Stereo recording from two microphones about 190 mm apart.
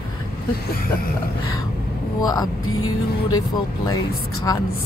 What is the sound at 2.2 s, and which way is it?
Speech, 20° left (ahead or behind).